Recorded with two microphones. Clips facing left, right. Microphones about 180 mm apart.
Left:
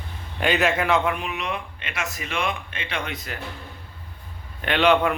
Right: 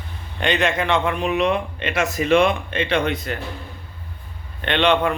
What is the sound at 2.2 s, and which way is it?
Speech, 45° right (ahead or behind).